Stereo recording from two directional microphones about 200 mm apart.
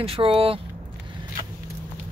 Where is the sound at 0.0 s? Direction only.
30° right (ahead or behind).